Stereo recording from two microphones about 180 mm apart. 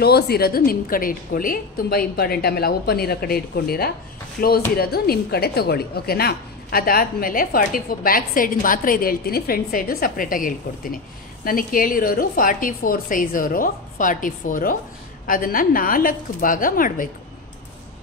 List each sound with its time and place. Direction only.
0.0 s a woman's voice: 60° left (ahead or behind)